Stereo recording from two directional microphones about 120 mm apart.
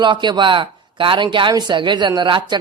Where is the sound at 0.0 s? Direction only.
40° right (ahead or behind).